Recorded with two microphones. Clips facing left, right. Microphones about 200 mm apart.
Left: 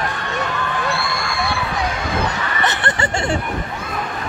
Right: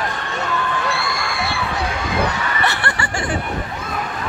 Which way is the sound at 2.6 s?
20° left (ahead or behind).